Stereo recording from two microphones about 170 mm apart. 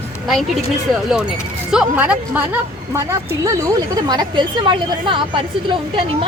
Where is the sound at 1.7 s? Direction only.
10° right (ahead or behind); by 5.2 s 30° right (ahead or behind).